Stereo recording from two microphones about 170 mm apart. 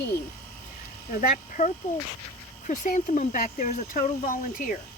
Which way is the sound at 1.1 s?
45° left (ahead or behind).